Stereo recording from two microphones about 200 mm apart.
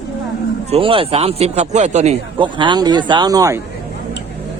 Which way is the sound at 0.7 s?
25° right (ahead or behind).